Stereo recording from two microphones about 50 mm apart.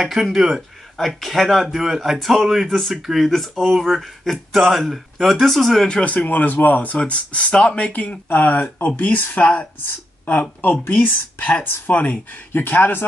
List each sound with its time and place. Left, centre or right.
0.0 s speech: centre
6.0 s speech: left
9.8 s a woman's voice: left
12.5 s speech: left